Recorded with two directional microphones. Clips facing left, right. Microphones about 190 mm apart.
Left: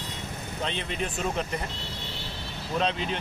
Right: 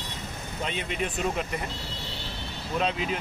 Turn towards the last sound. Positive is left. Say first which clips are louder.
# even
turn(degrees=-5)  # may be behind; listen again after turning